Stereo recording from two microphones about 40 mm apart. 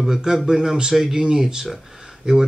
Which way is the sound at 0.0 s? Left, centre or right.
Centre.